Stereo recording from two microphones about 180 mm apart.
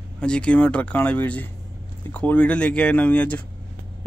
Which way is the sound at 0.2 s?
5° left (ahead or behind).